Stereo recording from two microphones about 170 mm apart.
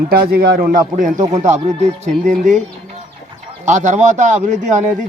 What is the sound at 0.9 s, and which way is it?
Speech, 45° right (ahead or behind).